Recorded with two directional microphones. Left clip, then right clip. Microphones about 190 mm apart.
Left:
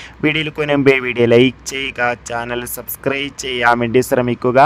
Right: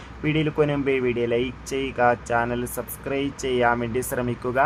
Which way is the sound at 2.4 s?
55° left (ahead or behind).